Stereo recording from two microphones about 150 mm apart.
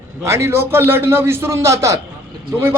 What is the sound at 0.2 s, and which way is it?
A man's voice, 20° right (ahead or behind).